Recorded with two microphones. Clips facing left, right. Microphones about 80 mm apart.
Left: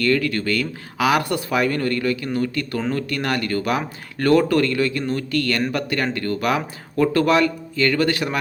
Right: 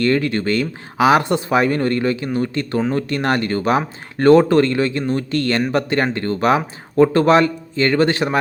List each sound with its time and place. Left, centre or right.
0.0 s speech: right